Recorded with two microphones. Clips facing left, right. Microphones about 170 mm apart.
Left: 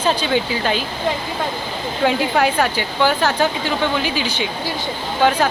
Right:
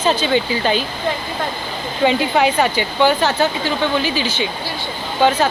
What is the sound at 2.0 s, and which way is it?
Speech, centre (ahead or behind).